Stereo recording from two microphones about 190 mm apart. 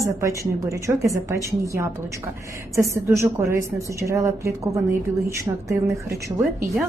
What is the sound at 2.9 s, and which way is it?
A woman's voice, 15° right (ahead or behind).